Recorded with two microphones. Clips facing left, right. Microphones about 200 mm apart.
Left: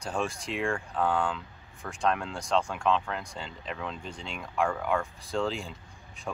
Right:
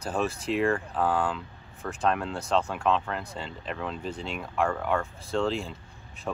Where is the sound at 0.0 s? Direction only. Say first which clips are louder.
Right 3 dB; 5° right (ahead or behind).